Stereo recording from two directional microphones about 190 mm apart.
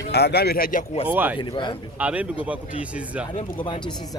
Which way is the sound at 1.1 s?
10° right (ahead or behind).